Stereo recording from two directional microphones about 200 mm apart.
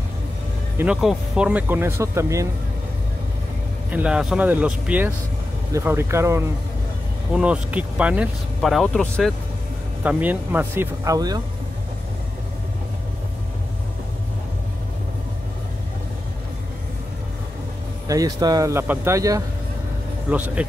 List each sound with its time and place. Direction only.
0.7 s speech: 5° right (ahead or behind)
3.9 s speech: 5° right (ahead or behind)
10.0 s speech: 10° right (ahead or behind)
18.0 s speech: 15° right (ahead or behind)